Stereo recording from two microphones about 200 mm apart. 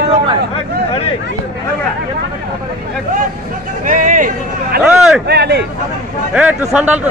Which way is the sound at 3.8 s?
40° right (ahead or behind).